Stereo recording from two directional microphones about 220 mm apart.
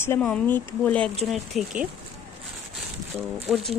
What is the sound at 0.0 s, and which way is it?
Speech, 10° left (ahead or behind).